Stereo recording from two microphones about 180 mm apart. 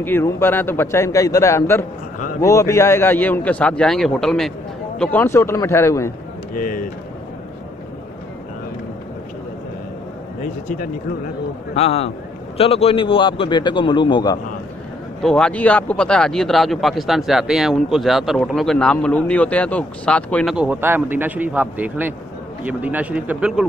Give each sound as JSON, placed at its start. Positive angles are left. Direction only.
{"t": 0.0, "sound": "a man's voice", "side_deg": 10}
{"t": 6.5, "sound": "speech", "side_deg": 50}
{"t": 11.7, "sound": "a man's voice", "side_deg": 35}
{"t": 15.2, "sound": "speech", "side_deg": 5}
{"t": 20.5, "sound": "a man's voice", "side_deg": -5}